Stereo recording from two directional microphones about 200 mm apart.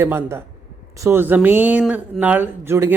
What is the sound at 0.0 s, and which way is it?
Speech, 10° right (ahead or behind).